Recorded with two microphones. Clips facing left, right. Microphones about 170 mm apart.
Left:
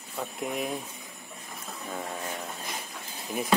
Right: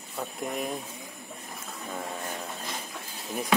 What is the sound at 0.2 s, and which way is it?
Speech, centre (ahead or behind).